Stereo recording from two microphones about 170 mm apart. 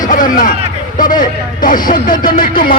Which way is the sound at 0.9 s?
55° left (ahead or behind).